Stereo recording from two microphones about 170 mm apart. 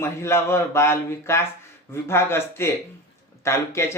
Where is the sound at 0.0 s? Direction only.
15° left (ahead or behind).